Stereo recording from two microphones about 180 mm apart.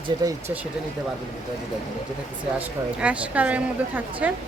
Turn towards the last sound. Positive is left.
turn(degrees=-10)  # may be behind; listen again after turning